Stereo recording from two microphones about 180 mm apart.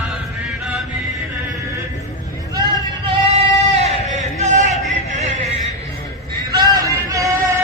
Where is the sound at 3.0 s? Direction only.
35° right (ahead or behind).